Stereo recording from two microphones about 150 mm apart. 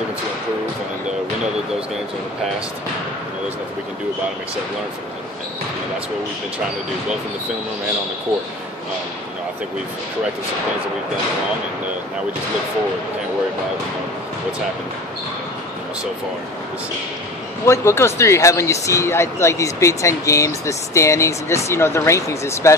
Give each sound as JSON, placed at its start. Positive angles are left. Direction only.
{"t": 17.6, "sound": "speech", "side_deg": 15}